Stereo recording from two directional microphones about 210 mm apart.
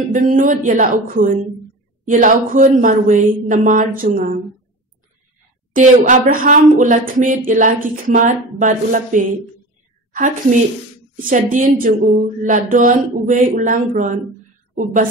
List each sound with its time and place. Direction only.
0.1 s speech: 40° right (ahead or behind)
5.7 s speech: 40° right (ahead or behind)
11.1 s speech: 40° right (ahead or behind)